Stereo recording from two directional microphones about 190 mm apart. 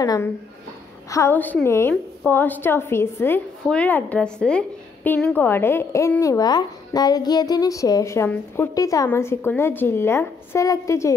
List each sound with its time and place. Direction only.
0.0 s a woman's voice: 20° left (ahead or behind)